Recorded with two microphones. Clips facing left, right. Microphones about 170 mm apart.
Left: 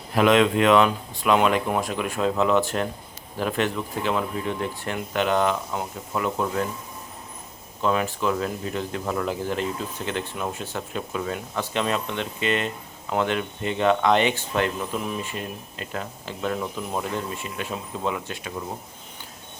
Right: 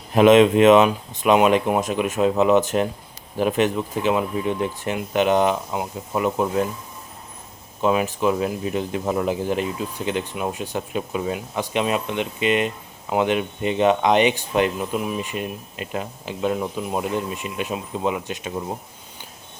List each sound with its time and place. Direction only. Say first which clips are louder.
0.1 s speech: right 5 dB; 20° right (ahead or behind)
7.8 s speech: right 3 dB; 15° right (ahead or behind)